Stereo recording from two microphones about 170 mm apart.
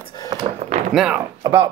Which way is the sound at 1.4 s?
20° right (ahead or behind).